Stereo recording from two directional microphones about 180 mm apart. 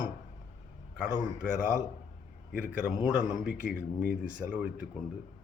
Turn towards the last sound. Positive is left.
turn(degrees=-10)  # may be behind; listen again after turning